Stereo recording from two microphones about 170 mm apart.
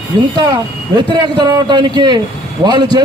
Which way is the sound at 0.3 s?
25° right (ahead or behind).